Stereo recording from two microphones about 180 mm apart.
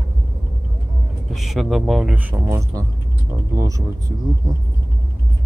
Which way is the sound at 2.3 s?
20° right (ahead or behind).